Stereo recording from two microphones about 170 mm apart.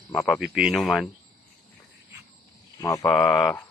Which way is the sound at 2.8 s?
20° left (ahead or behind).